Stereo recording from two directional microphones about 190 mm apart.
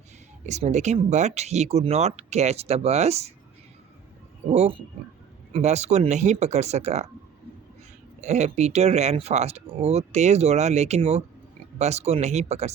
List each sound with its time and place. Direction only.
0.4 s speech: 35° right (ahead or behind)
4.4 s speech: 35° right (ahead or behind)
8.2 s speech: 35° right (ahead or behind)